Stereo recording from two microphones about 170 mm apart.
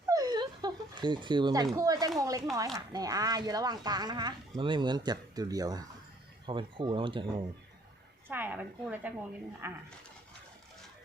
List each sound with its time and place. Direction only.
0.1 s a sound: 25° right (ahead or behind)
2.7 s speech: 20° right (ahead or behind)
8.3 s a woman's voice: 10° right (ahead or behind)